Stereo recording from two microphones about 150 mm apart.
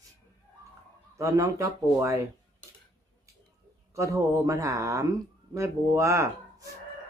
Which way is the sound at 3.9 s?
20° right (ahead or behind).